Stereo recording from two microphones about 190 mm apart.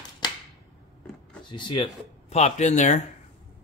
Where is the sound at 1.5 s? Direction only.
25° left (ahead or behind).